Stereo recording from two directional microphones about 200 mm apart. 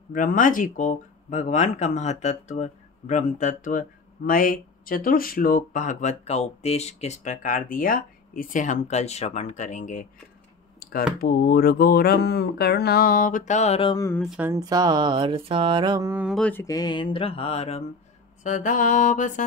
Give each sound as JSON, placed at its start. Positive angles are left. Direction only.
{"t": 0.1, "sound": "speech", "side_deg": 40}
{"t": 10.8, "sound": "a sound", "side_deg": 50}
{"t": 11.1, "sound": "speech", "side_deg": 50}
{"t": 14.2, "sound": "speech", "side_deg": -5}
{"t": 14.5, "sound": "mantra", "side_deg": -20}
{"t": 18.4, "sound": "speech", "side_deg": 40}